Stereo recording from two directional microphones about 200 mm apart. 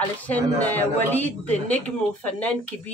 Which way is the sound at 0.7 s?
10° left (ahead or behind).